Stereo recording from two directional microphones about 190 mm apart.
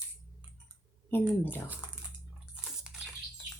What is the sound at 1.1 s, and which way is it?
Speech, 10° left (ahead or behind).